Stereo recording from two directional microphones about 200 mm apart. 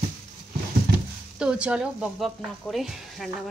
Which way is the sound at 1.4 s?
5° right (ahead or behind).